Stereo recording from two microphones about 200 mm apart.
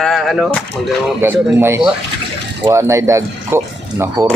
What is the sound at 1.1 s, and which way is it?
Speech, 10° right (ahead or behind).